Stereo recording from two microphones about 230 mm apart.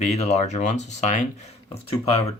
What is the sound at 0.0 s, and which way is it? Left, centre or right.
Speech, left.